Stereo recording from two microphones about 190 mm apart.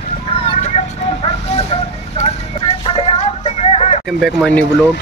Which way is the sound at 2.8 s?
30° left (ahead or behind).